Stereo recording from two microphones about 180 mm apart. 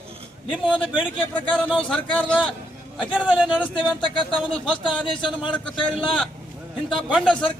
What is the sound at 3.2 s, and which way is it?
Speech, 5° right (ahead or behind).